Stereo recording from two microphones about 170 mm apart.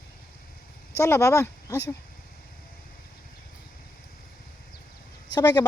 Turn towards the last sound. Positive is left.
turn(degrees=25)  # may be behind; listen again after turning